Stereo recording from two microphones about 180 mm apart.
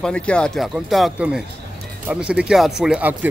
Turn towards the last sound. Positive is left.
turn(degrees=-5)  # may be behind; listen again after turning